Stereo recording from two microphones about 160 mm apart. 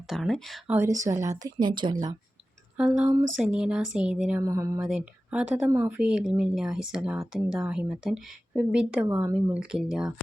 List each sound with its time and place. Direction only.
0.1 s speech: centre (ahead or behind)
0.7 s a woman's voice: 20° right (ahead or behind)
2.7 s speech: 5° right (ahead or behind)
4.4 s a woman's voice: 20° right (ahead or behind)
4.8 s speech: 5° right (ahead or behind)
9.0 s a woman's voice: 20° right (ahead or behind)
9.3 s speech: 5° right (ahead or behind)